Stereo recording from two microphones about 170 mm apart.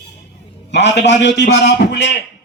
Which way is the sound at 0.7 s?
90° left.